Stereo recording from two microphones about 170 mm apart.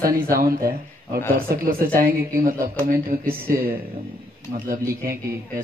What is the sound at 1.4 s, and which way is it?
A woman's voice, 55° right (ahead or behind).